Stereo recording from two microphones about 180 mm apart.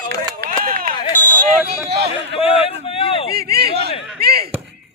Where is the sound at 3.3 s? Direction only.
60° right (ahead or behind).